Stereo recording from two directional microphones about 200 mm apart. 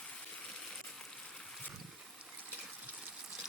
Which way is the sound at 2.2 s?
Centre (ahead or behind).